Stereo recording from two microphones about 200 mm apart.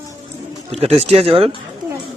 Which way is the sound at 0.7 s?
30° right (ahead or behind).